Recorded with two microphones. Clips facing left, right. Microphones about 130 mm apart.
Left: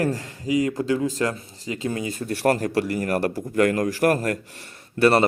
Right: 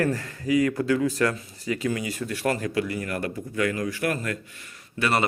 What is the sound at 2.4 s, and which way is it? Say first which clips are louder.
A man's voice: left 5 dB; 45° left (ahead or behind).